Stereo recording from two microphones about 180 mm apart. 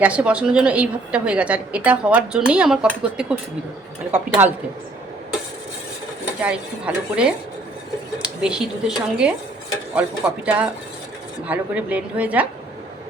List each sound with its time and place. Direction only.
0.0 s a woman's voice: 5° right (ahead or behind)
6.4 s a woman's voice: 5° right (ahead or behind)